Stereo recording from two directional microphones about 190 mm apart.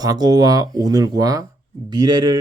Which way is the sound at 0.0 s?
20° right (ahead or behind).